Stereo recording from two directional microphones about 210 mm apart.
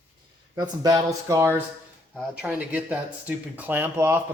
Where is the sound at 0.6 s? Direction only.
15° right (ahead or behind).